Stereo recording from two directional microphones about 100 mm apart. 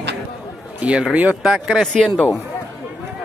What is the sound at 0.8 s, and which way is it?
A man's voice, 10° right (ahead or behind).